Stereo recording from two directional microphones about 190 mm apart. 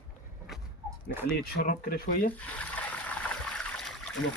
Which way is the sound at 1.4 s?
50° left (ahead or behind).